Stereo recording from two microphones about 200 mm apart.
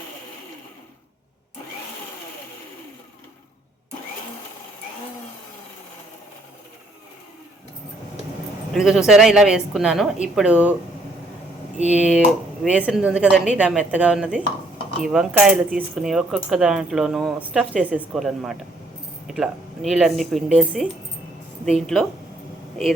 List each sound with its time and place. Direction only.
8.7 s speech: centre (ahead or behind)
11.9 s speech: 5° right (ahead or behind)